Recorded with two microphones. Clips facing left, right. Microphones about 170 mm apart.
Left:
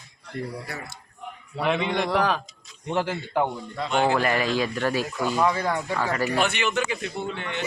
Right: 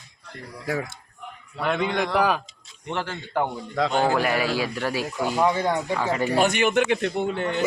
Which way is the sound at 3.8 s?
90° right.